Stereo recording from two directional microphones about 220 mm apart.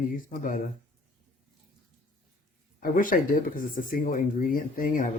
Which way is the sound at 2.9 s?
40° left (ahead or behind).